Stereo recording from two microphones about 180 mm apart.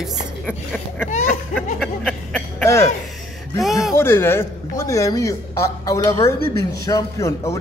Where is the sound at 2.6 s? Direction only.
15° left (ahead or behind).